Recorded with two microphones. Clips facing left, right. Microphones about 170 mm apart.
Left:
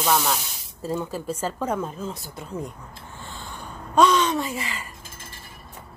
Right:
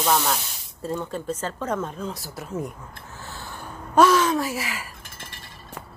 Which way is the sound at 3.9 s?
5° right (ahead or behind).